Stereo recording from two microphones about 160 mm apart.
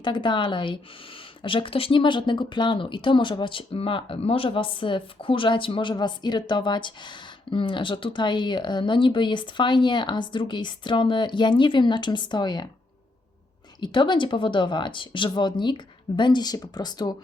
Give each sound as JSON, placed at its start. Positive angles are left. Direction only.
{"t": 0.0, "sound": "speech", "side_deg": 30}
{"t": 13.8, "sound": "speech", "side_deg": 30}